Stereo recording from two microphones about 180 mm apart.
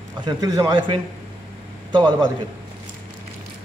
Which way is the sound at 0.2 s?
20° right (ahead or behind).